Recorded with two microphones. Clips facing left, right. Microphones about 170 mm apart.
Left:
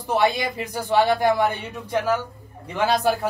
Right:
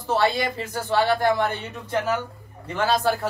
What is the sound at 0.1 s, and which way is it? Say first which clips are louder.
Speech: left 1 dB; 15° left (ahead or behind).